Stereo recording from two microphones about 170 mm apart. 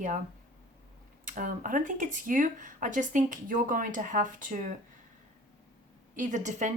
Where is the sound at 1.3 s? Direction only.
50° right (ahead or behind).